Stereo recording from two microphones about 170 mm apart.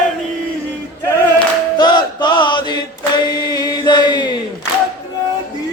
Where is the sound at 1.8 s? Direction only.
25° left (ahead or behind).